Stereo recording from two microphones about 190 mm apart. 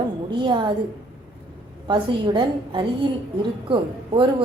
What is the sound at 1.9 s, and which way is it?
A woman's voice, 25° right (ahead or behind).